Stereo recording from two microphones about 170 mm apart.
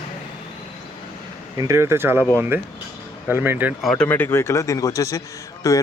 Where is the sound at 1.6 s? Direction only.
15° right (ahead or behind).